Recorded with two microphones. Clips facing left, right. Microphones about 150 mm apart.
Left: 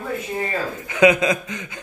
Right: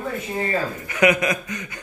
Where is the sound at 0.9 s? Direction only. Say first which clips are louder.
Left 4 dB; 20° left (ahead or behind).